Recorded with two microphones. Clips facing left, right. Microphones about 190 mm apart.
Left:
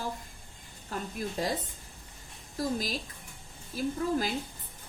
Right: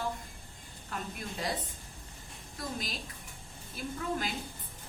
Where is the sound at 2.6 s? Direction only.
40° left (ahead or behind).